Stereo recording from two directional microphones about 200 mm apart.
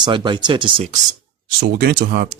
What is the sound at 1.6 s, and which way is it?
Speech, 55° right (ahead or behind).